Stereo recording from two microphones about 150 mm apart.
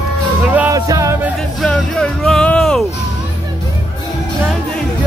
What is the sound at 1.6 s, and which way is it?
Music, 5° left (ahead or behind).